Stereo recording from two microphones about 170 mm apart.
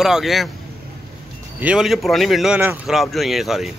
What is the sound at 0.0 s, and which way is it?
Speech, centre (ahead or behind).